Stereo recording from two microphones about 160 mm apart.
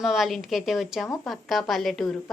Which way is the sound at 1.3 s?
Centre (ahead or behind).